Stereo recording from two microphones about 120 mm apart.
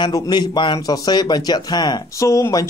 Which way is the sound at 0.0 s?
35° left (ahead or behind).